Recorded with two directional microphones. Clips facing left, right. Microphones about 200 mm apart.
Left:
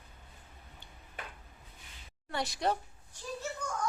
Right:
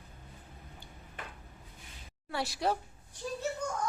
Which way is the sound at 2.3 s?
5° right (ahead or behind).